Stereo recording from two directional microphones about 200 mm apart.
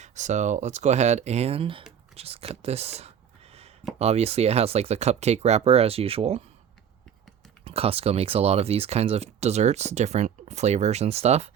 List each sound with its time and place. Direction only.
0.0 s speech: 35° right (ahead or behind)
7.6 s speech: 30° right (ahead or behind)